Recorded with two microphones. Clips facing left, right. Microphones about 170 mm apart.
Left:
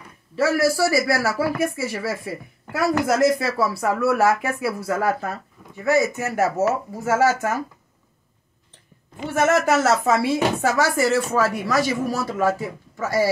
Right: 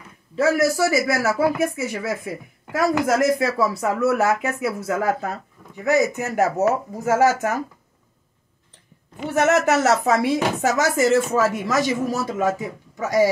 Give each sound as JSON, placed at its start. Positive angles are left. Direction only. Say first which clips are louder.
{"t": 0.4, "sound": "a man's voice", "louder": "right 1 dB", "side_deg": -20}
{"t": 9.2, "sound": "a man's voice", "louder": "right 1 dB", "side_deg": -15}